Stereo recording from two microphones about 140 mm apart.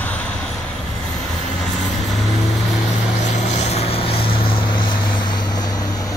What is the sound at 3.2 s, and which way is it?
Vehicle, 55° left (ahead or behind).